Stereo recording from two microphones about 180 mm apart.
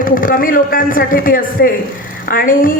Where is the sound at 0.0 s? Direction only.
50° left (ahead or behind).